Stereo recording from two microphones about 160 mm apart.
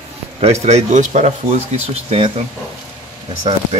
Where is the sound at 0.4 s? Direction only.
40° right (ahead or behind).